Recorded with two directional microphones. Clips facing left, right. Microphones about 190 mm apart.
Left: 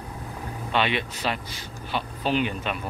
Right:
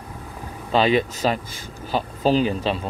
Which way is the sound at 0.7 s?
35° right (ahead or behind).